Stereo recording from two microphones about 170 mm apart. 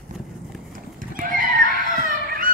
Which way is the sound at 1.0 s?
55° right (ahead or behind).